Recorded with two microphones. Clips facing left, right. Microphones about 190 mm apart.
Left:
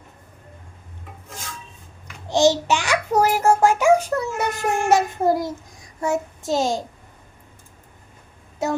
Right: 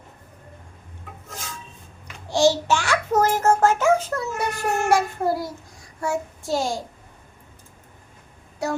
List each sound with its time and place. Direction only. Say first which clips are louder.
2.3 s a child's voice: left 1 dB; 20° left (ahead or behind)
6.0 s child singing: left 3 dB; 20° left (ahead or behind)
8.6 s child singing: left 2 dB; 20° left (ahead or behind)